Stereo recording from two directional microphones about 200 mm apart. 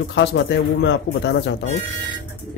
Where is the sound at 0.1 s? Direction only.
60° left (ahead or behind).